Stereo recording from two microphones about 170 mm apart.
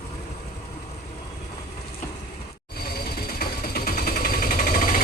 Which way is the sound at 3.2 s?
60° left (ahead or behind).